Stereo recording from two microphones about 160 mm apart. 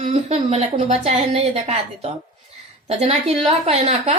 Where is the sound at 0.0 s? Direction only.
45° right (ahead or behind).